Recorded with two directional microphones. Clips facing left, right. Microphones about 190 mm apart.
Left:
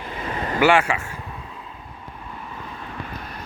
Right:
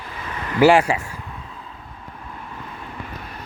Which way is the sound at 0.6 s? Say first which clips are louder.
Right 4 dB; 35° right (ahead or behind).